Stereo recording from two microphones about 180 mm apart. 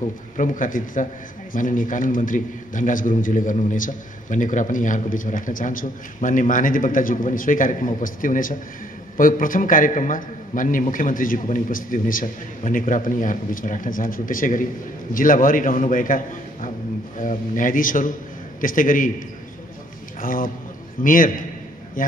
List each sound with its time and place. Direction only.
0.4 s a man's voice: 45° left (ahead or behind)
17.2 s a man's voice: 50° left (ahead or behind)